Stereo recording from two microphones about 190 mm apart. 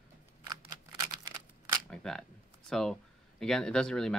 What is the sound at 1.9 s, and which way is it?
Speech, 5° left (ahead or behind).